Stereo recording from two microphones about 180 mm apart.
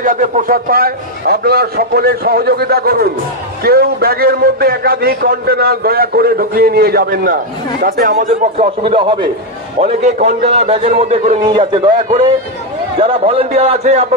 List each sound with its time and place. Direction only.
0.0 s a man's voice: 50° right (ahead or behind); by 9.3 s 25° right (ahead or behind)
9.8 s a man's voice: 40° right (ahead or behind)